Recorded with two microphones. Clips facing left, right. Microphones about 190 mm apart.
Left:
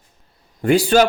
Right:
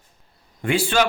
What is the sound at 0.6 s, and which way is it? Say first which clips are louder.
Speech: left 6 dB; 40° left (ahead or behind).